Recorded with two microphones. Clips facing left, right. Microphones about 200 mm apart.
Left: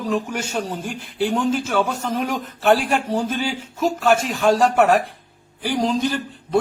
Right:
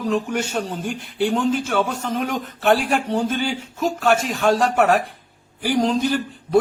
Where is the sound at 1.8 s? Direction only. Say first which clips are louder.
Left 1 dB; 40° left (ahead or behind).